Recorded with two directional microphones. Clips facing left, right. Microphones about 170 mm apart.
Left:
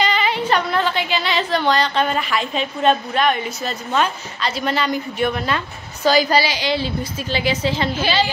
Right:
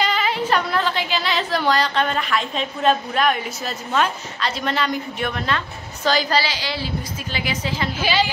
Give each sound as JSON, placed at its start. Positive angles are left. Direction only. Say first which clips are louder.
{"t": 0.0, "sound": "a woman's voice", "louder": "left 2 dB", "side_deg": 0}
{"t": 7.9, "sound": "a woman's voice", "louder": "left 2 dB", "side_deg": -10}